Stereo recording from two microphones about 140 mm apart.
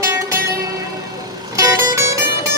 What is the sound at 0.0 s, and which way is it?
Music, 20° right (ahead or behind).